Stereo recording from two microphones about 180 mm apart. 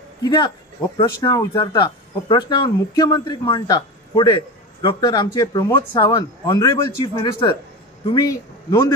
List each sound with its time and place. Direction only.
0.2 s a man's voice: 20° left (ahead or behind)